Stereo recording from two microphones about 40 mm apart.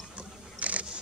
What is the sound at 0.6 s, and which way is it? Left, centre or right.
Camera, right.